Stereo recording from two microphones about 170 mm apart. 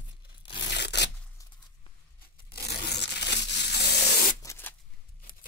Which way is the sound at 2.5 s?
75° left (ahead or behind).